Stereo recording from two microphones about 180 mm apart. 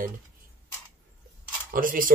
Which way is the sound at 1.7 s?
50° right (ahead or behind).